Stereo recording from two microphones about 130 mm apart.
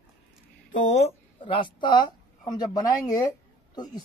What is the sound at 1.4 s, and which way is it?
Speech, 40° left (ahead or behind).